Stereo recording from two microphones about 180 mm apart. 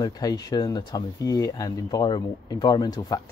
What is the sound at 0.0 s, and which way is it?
Speech, 20° left (ahead or behind).